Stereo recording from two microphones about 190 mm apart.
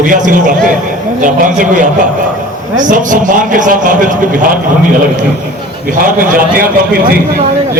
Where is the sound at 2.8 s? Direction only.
45° right (ahead or behind).